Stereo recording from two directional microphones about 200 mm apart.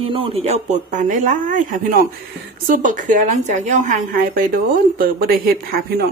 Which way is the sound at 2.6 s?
40° right (ahead or behind).